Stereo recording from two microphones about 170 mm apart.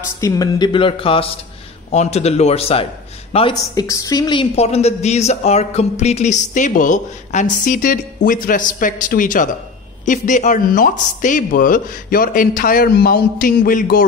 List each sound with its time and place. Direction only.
0.2 s a woman's voice: 25° left (ahead or behind)
3.8 s a woman's voice: 20° left (ahead or behind)
4.6 s a man's voice: 40° left (ahead or behind); by 14.0 s 55° left (ahead or behind)